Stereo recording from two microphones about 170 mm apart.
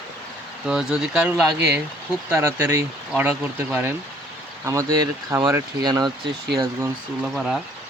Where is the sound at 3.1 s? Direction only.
5° right (ahead or behind); by 6.1 s 25° right (ahead or behind).